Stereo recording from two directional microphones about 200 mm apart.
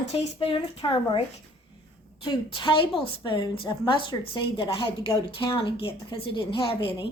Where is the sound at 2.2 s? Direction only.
25° left (ahead or behind).